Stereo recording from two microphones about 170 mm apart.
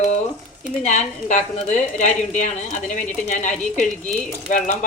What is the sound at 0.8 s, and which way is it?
A woman's voice, 45° left (ahead or behind).